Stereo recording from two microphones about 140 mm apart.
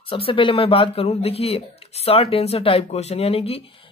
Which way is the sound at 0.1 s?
40° left (ahead or behind).